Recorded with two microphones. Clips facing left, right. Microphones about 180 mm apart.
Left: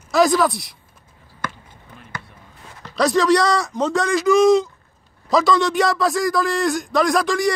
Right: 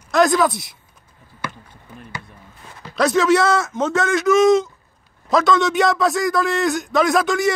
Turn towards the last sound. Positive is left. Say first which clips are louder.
# right 1 dB
turn(degrees=0)  # may be behind; listen again after turning